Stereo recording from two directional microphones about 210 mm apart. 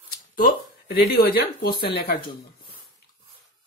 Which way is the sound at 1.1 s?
45° left (ahead or behind).